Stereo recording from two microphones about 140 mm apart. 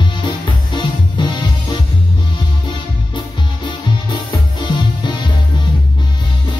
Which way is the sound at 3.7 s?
35° left (ahead or behind).